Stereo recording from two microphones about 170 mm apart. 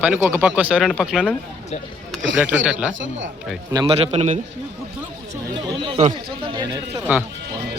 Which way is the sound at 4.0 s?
35° right (ahead or behind).